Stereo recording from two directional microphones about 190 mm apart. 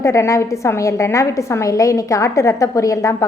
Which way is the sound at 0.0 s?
15° left (ahead or behind).